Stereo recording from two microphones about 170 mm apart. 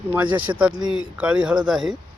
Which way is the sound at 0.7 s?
25° right (ahead or behind).